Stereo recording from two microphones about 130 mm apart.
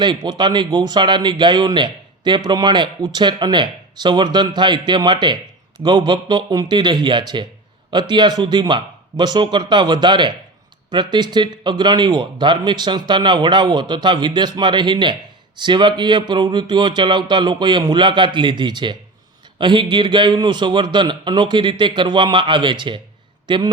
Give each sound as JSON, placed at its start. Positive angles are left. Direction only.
{"t": 0.0, "sound": "speech", "side_deg": -35}